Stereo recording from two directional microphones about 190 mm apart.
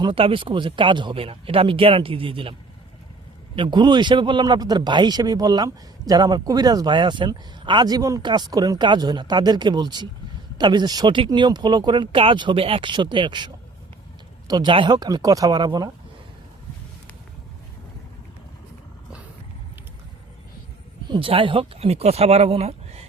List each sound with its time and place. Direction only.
0.0 s a man's voice: 30° right (ahead or behind)
21.1 s speech: 30° right (ahead or behind)